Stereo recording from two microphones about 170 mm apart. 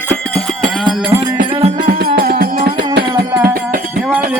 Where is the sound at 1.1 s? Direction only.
20° right (ahead or behind).